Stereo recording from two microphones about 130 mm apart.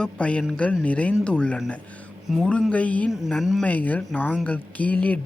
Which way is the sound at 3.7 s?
10° left (ahead or behind).